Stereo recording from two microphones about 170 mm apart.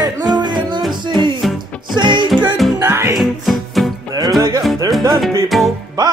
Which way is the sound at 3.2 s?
Centre (ahead or behind).